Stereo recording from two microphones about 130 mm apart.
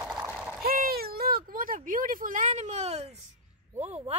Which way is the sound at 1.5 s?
90° right.